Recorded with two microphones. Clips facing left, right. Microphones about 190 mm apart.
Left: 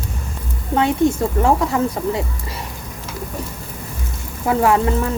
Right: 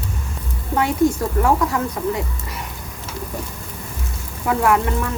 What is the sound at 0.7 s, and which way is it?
A woman's voice, 20° left (ahead or behind).